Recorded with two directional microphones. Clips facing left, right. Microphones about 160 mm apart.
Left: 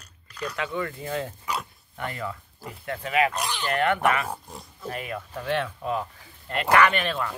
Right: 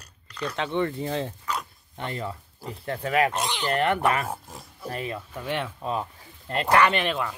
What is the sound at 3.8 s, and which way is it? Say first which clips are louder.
Speech: left 1 dB; 30° right (ahead or behind).